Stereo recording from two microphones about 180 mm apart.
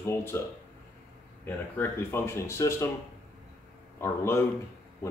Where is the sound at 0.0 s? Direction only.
15° left (ahead or behind).